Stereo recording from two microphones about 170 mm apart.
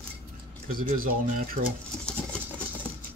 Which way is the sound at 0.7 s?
55° right (ahead or behind).